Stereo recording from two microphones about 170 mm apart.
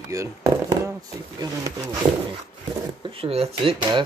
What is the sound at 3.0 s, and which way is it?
Speech, 35° right (ahead or behind).